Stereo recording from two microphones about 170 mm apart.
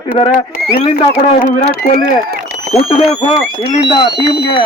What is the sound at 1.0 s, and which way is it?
Speech, 45° left (ahead or behind).